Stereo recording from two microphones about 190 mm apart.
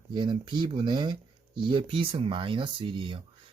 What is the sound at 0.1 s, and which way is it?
Speech, 25° right (ahead or behind).